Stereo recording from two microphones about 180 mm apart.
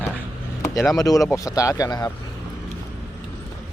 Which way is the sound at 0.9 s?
20° left (ahead or behind).